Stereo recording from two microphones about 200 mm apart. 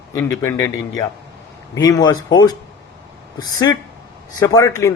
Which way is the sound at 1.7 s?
15° left (ahead or behind).